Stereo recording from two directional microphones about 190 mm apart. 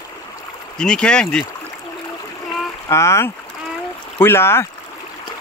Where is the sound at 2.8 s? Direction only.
15° left (ahead or behind).